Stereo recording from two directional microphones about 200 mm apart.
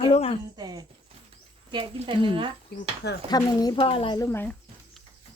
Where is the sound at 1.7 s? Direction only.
25° right (ahead or behind).